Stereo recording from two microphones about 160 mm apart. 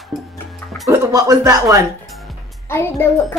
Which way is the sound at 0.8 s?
20° right (ahead or behind).